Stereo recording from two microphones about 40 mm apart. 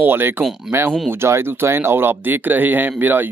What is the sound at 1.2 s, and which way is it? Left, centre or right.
Speech, right.